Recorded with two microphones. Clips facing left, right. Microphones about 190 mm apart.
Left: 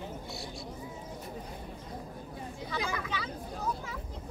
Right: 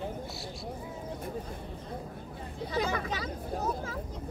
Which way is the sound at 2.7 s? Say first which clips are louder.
Right 4 dB; 40° right (ahead or behind).